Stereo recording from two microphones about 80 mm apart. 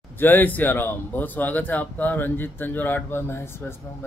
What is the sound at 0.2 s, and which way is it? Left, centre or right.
A man's voice, left.